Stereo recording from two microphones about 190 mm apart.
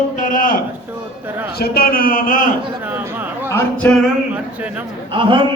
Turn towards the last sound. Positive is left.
turn(degrees=-25)  # may be behind; listen again after turning